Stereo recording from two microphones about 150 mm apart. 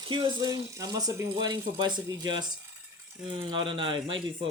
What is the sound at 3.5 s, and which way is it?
Speech, 35° right (ahead or behind).